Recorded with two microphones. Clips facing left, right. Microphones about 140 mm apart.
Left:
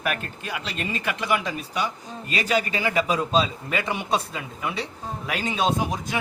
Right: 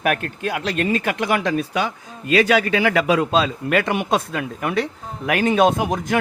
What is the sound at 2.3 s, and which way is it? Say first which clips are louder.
A man's voice: right 8 dB; 85° right.